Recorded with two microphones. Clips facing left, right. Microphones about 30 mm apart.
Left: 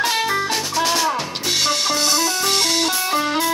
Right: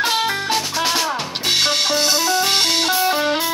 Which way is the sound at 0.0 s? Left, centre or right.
Centre.